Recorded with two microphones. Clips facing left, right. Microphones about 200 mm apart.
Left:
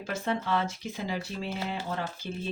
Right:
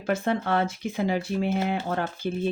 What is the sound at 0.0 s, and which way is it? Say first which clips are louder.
Speech: right 6 dB; 55° right (ahead or behind).